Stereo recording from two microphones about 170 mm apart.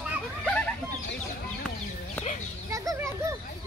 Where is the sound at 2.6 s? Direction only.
20° right (ahead or behind).